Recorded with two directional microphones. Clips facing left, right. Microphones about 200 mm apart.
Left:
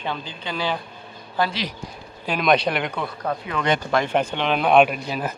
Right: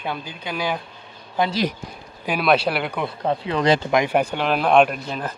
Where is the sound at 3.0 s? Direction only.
25° right (ahead or behind).